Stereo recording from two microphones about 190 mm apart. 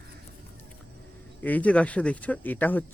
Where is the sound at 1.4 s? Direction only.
10° left (ahead or behind).